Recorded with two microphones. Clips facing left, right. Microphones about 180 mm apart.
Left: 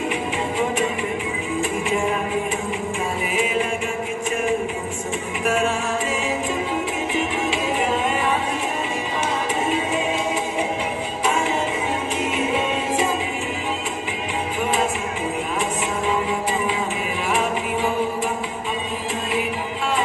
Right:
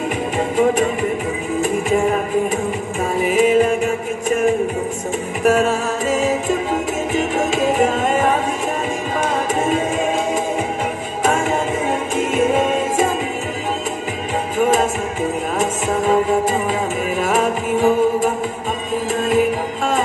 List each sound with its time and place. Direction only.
3.3 s music: 40° right (ahead or behind)
5.4 s music: 40° right (ahead or behind)
9.7 s music: 45° right (ahead or behind)
15.6 s music: 45° right (ahead or behind)